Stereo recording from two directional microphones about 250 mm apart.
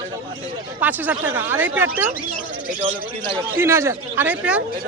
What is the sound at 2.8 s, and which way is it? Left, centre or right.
Speech, right.